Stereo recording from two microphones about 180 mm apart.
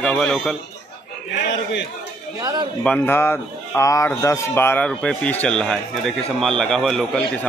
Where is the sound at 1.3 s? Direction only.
75° left (ahead or behind).